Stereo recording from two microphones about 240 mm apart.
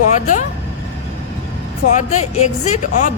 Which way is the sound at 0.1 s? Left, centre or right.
Left.